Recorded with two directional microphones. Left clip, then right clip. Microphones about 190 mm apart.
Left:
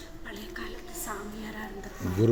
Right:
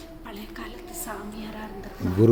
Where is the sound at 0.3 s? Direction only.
60° right (ahead or behind).